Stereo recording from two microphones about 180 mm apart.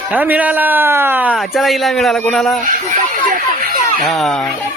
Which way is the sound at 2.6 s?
45° right (ahead or behind).